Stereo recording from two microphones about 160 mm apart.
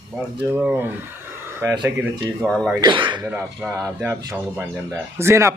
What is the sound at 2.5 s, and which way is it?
Speech, 5° left (ahead or behind).